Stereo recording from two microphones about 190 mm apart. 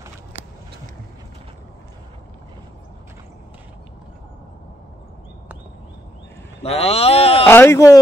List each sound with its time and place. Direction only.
6.6 s speech: 30° left (ahead or behind)
7.4 s speech: 10° left (ahead or behind)